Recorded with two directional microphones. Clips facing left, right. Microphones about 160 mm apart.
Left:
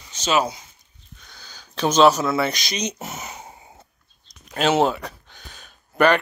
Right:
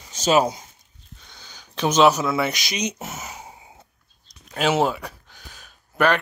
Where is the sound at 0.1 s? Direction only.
45° right (ahead or behind).